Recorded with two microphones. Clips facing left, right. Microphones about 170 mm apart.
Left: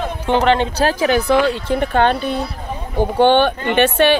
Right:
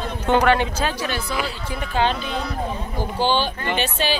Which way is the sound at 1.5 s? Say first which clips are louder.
Left 10 dB; 60° left (ahead or behind).